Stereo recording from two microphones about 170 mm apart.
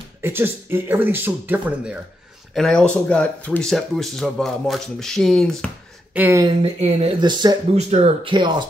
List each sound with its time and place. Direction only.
0.2 s speech: 15° right (ahead or behind)
2.5 s speech: 5° left (ahead or behind)
6.1 s speech: 10° right (ahead or behind)
6.6 s speech: 35° right (ahead or behind)
7.7 s speech: 40° right (ahead or behind)